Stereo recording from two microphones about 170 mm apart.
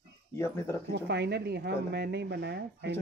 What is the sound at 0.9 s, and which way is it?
Speech, 80° right.